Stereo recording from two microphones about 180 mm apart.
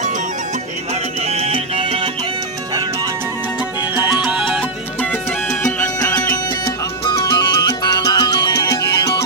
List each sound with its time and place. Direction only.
1.3 s music: 35° right (ahead or behind)
3.9 s music: 10° right (ahead or behind)
6.3 s music: 25° left (ahead or behind)